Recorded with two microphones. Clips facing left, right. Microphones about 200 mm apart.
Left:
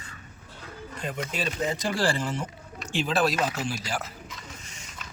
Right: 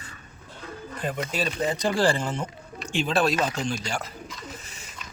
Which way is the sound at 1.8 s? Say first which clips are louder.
Right 5 dB; 25° right (ahead or behind).